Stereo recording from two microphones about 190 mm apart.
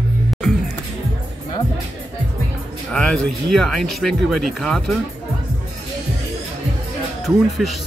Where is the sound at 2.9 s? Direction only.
5° left (ahead or behind).